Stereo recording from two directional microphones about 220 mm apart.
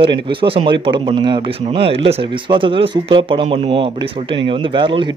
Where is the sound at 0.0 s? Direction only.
25° right (ahead or behind).